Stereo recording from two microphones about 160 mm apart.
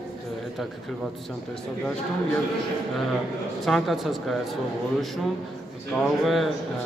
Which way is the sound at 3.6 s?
Centre (ahead or behind).